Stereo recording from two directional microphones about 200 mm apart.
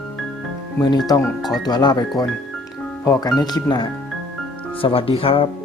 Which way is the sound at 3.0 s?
20° left (ahead or behind).